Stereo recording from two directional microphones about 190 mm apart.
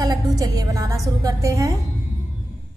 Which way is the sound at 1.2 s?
20° right (ahead or behind).